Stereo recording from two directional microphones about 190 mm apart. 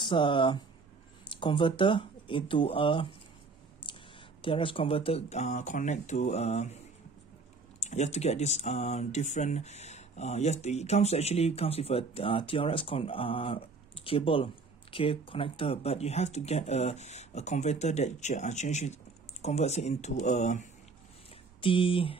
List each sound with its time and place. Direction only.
0.0 s speech: 25° left (ahead or behind)
4.4 s speech: 25° left (ahead or behind)
7.8 s speech: 35° left (ahead or behind)
21.5 s speech: 25° left (ahead or behind)